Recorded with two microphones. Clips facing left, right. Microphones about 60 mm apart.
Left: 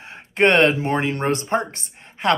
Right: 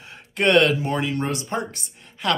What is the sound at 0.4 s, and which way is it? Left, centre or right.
Speech, left.